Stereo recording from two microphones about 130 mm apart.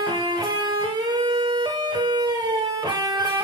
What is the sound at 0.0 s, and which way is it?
Music, 30° right (ahead or behind).